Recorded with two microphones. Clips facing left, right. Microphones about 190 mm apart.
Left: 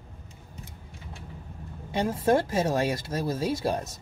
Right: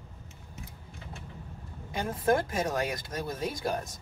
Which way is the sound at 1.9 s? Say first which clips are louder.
Left 4 dB; 25° left (ahead or behind).